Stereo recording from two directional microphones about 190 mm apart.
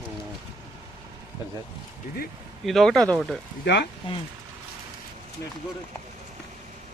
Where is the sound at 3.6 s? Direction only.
60° left (ahead or behind).